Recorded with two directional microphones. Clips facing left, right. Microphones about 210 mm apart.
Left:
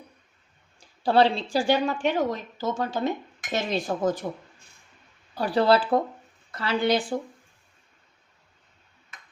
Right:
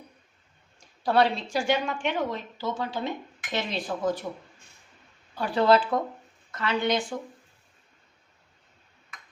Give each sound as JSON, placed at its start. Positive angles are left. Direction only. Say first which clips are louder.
{"t": 0.8, "sound": "a woman's voice", "louder": "left 3 dB", "side_deg": 30}
{"t": 3.5, "sound": "dishes", "louder": "left 3 dB", "side_deg": 45}
{"t": 5.3, "sound": "a woman's voice", "louder": "left 1 dB", "side_deg": 35}